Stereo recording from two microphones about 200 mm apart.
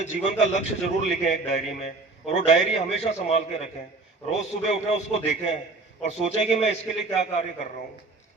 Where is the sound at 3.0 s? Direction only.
30° left (ahead or behind).